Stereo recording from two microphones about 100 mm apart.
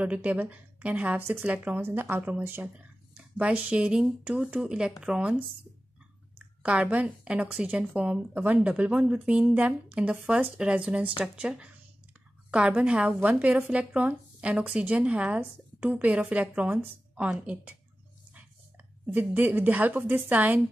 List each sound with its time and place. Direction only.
0.0 s a woman's voice: 15° right (ahead or behind)
19.0 s a woman's voice: 20° right (ahead or behind)